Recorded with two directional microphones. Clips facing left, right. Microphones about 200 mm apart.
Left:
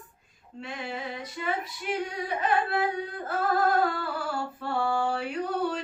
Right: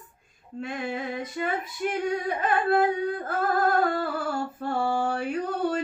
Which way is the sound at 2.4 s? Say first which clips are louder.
Right 3 dB; 50° right (ahead or behind).